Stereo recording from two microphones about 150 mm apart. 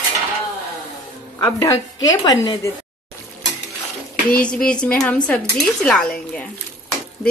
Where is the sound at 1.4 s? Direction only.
25° left (ahead or behind).